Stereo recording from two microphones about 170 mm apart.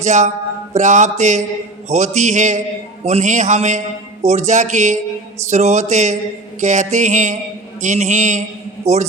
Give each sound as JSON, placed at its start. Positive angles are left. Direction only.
{"t": 0.0, "sound": "a man's voice", "side_deg": -45}